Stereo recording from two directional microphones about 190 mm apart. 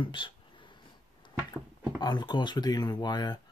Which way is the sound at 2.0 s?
20° left (ahead or behind).